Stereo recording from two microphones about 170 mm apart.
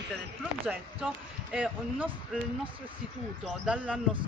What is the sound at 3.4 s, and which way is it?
Speech, 5° right (ahead or behind).